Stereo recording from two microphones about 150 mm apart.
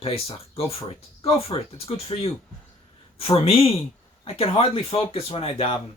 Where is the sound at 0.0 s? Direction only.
40° left (ahead or behind).